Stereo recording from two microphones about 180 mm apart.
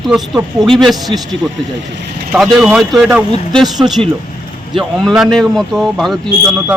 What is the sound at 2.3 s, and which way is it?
Speech, 5° right (ahead or behind).